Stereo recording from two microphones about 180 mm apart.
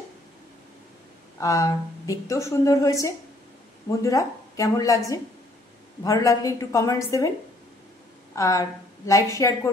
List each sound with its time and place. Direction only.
1.4 s a woman's voice: 20° left (ahead or behind)
8.4 s a woman's voice: 15° left (ahead or behind)